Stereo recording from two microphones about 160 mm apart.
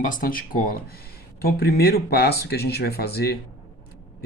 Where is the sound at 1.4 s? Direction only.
75° left (ahead or behind).